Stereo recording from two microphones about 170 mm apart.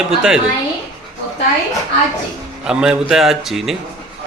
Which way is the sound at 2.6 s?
5° right (ahead or behind).